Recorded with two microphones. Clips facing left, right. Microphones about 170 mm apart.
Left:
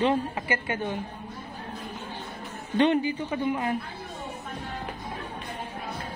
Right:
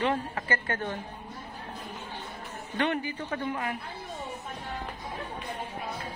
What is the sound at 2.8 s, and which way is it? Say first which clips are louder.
Speech: left 7 dB; 20° left (ahead or behind).